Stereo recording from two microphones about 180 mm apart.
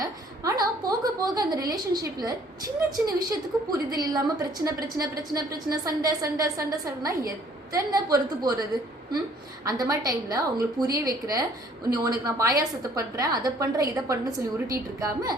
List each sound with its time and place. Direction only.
0.0 s a sound: 20° right (ahead or behind)
2.9 s a woman's voice: 20° right (ahead or behind)
9.6 s a woman's voice: 20° right (ahead or behind)